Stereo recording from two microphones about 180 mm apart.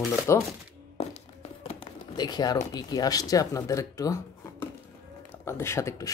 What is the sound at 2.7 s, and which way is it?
Speech, 20° left (ahead or behind).